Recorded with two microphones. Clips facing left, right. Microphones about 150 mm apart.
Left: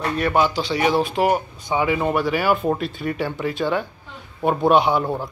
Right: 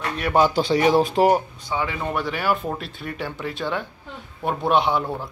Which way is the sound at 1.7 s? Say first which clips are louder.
Left 6 dB; 15° left (ahead or behind).